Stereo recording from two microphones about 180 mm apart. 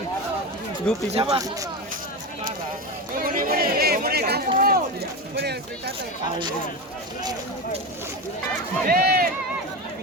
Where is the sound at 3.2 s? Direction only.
50° right (ahead or behind).